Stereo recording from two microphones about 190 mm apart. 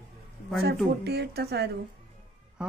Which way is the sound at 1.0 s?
60° right (ahead or behind).